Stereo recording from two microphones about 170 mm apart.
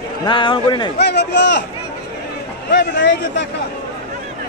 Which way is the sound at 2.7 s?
90° left.